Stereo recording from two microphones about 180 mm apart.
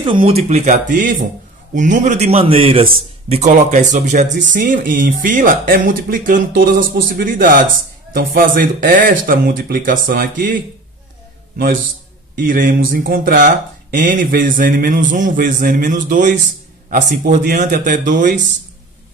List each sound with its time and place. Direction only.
0.0 s a man's voice: 30° right (ahead or behind); by 18.3 s 45° right (ahead or behind)